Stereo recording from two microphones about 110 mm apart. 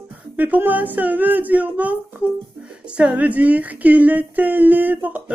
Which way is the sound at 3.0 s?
10° right (ahead or behind).